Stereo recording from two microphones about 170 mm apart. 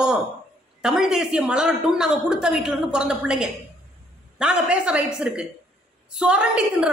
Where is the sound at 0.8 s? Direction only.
5° right (ahead or behind).